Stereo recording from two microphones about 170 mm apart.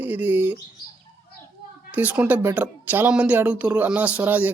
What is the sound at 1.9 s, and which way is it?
Speech, 10° right (ahead or behind).